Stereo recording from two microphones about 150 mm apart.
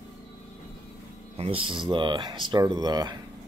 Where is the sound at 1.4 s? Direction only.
35° right (ahead or behind).